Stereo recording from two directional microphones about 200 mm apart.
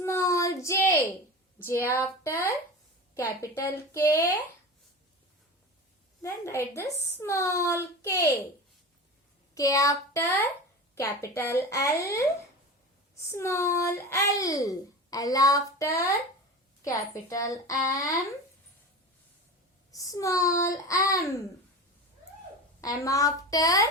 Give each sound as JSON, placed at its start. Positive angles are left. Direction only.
{"t": 0.0, "sound": "child singing", "side_deg": 15}
{"t": 1.6, "sound": "a child's voice", "side_deg": 10}
{"t": 6.2, "sound": "a child's voice", "side_deg": 15}
{"t": 9.6, "sound": "a child's voice", "side_deg": 15}
{"t": 13.3, "sound": "a child's voice", "side_deg": 15}
{"t": 19.9, "sound": "a child's voice", "side_deg": 15}
{"t": 22.8, "sound": "a child's voice", "side_deg": 15}